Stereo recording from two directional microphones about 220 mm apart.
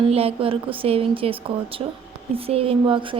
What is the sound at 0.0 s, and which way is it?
Speech, 25° right (ahead or behind).